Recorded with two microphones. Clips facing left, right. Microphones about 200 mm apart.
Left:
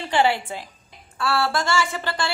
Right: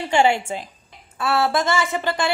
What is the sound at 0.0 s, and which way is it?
A woman's voice, 15° right (ahead or behind).